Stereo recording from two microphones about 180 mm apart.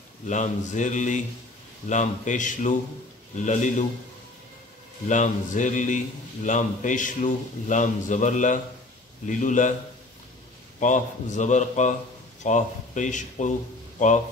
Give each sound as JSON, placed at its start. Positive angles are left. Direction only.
{"t": 0.3, "sound": "a man's voice", "side_deg": 45}
{"t": 5.0, "sound": "a man's voice", "side_deg": 45}
{"t": 10.8, "sound": "a man's voice", "side_deg": 45}